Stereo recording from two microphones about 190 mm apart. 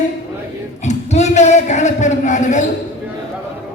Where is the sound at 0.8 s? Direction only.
35° left (ahead or behind).